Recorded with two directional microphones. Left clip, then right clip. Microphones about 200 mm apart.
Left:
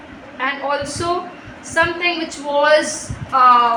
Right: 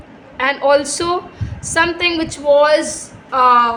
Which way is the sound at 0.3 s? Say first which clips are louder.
Right 7 dB; 60° right (ahead or behind).